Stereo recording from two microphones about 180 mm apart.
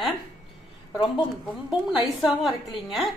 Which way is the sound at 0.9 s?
25° left (ahead or behind).